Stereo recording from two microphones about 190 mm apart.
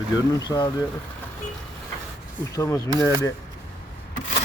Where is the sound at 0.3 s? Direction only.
20° left (ahead or behind).